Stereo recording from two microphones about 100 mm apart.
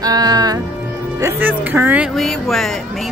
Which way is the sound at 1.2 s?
25° right (ahead or behind).